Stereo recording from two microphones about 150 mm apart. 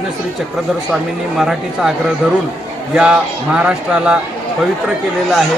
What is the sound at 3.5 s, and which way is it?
Speech, 5° right (ahead or behind).